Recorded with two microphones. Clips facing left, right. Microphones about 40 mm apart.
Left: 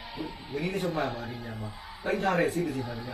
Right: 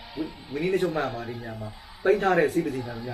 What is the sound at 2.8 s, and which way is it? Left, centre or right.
Speech, centre.